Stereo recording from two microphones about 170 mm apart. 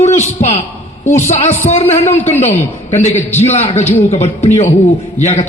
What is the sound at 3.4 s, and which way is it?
A man's voice, 40° left (ahead or behind).